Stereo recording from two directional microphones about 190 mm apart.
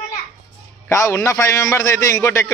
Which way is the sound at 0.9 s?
15° left (ahead or behind).